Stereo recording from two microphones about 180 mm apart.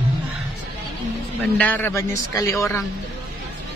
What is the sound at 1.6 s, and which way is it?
A man's voice, 10° left (ahead or behind).